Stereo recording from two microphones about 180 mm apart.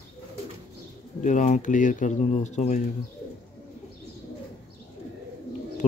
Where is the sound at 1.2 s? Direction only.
45° left (ahead or behind).